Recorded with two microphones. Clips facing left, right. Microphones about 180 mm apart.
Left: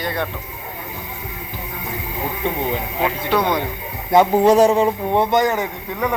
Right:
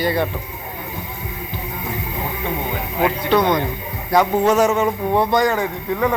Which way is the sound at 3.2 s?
10° left (ahead or behind).